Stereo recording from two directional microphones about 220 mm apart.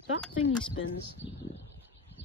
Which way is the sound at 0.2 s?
5° left (ahead or behind).